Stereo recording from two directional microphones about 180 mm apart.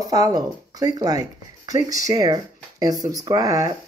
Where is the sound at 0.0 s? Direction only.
20° right (ahead or behind).